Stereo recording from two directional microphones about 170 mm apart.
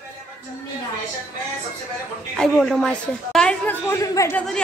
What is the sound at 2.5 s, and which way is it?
A woman's voice, centre (ahead or behind).